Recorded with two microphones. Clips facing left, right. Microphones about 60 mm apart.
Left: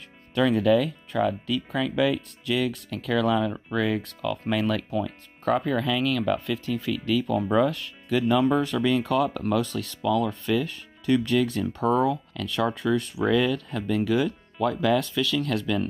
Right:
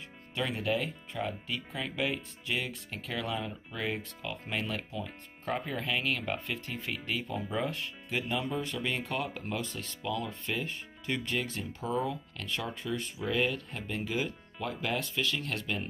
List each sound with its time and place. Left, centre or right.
0.3 s speech: left